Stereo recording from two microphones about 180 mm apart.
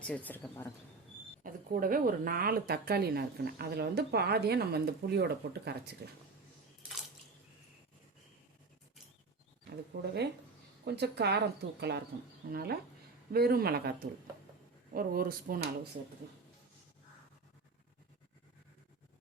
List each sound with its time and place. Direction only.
0.0 s speech: 10° left (ahead or behind)
1.5 s a woman's voice: 50° right (ahead or behind)
9.9 s a woman's voice: 65° right (ahead or behind)
12.5 s a woman's voice: 55° right (ahead or behind)
14.9 s a woman's voice: 55° right (ahead or behind)